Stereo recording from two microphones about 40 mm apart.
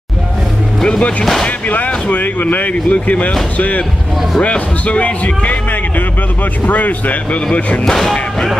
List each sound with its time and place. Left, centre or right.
0.8 s speech: left
2.0 s speech: left
6.6 s speech: left
7.8 s speech: centre